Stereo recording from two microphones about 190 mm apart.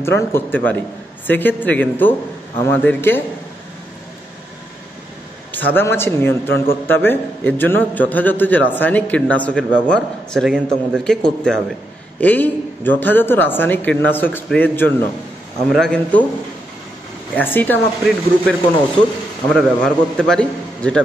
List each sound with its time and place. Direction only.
0.0 s a man's voice: 15° left (ahead or behind)
5.5 s a man's voice: 10° left (ahead or behind)
17.4 s a man's voice: 10° left (ahead or behind)